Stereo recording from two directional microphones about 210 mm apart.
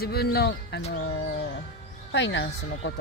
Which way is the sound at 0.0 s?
50° left (ahead or behind).